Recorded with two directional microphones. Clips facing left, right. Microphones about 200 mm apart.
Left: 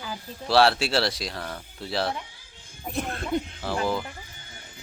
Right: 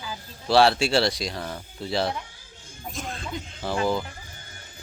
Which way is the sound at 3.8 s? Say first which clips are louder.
Right 2 dB; centre (ahead or behind).